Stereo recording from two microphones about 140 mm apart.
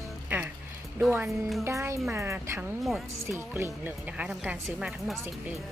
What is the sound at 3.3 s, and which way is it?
A woman's voice, 20° right (ahead or behind).